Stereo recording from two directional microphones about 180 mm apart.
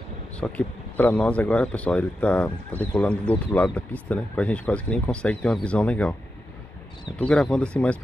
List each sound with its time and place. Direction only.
0.4 s speech: 5° left (ahead or behind)
7.2 s speech: 5° left (ahead or behind)